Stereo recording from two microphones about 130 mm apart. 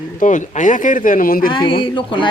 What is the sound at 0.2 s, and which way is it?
Speech, 75° left (ahead or behind).